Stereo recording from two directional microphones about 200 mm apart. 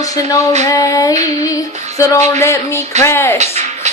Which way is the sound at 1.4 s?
15° left (ahead or behind).